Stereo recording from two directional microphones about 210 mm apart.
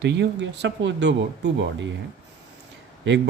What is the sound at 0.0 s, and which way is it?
Speech, 55° right (ahead or behind).